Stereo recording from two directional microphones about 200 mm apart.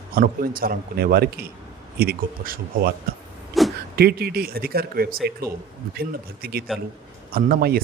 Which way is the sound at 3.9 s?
50° right (ahead or behind).